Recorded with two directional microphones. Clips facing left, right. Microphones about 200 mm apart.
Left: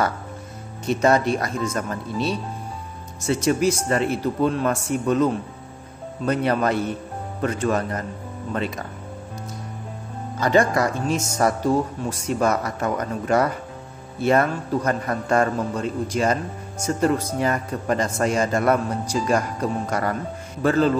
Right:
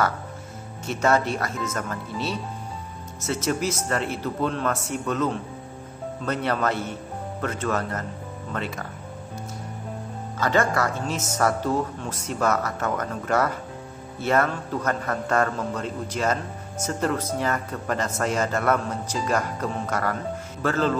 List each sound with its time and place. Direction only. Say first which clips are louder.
0.8 s a man's voice: left 4 dB; 15° left (ahead or behind)
10.4 s a man's voice: left 4 dB; 15° left (ahead or behind)